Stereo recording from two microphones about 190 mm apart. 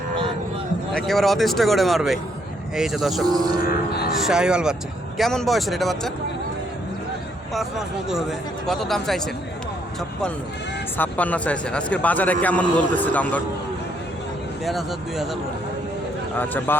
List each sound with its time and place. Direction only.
0.9 s speech: centre (ahead or behind)
3.2 s speech: 20° right (ahead or behind)
4.2 s speech: 5° right (ahead or behind)
7.5 s speech: centre (ahead or behind)
10.9 s a man's voice: 10° left (ahead or behind)
14.6 s speech: centre (ahead or behind)
16.4 s a man's voice: 10° left (ahead or behind)